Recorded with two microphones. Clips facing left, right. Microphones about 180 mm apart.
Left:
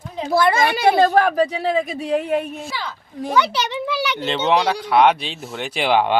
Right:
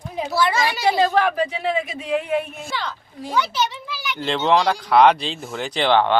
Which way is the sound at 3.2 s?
65° left (ahead or behind).